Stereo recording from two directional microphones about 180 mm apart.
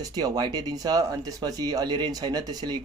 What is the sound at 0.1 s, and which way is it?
Speech, 25° right (ahead or behind).